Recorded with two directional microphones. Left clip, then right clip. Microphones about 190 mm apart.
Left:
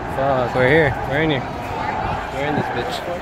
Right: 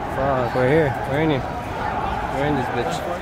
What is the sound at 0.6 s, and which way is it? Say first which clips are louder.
Speech: left 4 dB; 5° right (ahead or behind).